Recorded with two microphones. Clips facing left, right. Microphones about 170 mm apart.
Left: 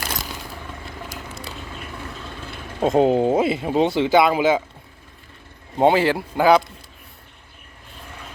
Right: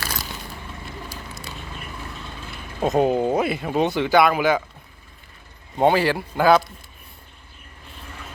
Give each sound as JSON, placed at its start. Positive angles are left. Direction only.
{"t": 2.8, "sound": "speech", "side_deg": 25}
{"t": 5.8, "sound": "speech", "side_deg": 20}